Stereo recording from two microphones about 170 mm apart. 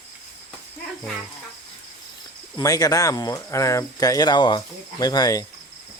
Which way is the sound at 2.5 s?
20° left (ahead or behind).